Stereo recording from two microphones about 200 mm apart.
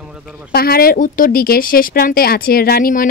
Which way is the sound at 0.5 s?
50° left (ahead or behind).